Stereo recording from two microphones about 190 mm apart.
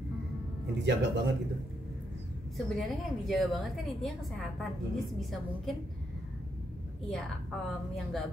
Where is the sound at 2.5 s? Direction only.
Centre (ahead or behind).